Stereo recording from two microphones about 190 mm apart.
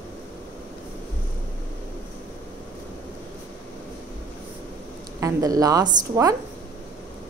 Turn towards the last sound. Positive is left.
turn(degrees=-20)  # may be behind; listen again after turning